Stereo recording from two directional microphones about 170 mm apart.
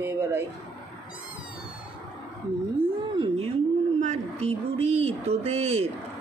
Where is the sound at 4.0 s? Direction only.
40° right (ahead or behind).